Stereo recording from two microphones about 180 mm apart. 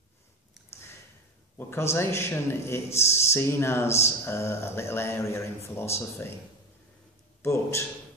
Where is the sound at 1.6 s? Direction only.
15° left (ahead or behind).